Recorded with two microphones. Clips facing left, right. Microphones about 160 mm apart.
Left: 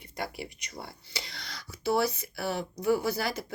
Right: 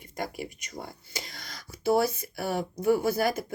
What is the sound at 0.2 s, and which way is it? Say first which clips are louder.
Speech: right 2 dB; 45° right (ahead or behind).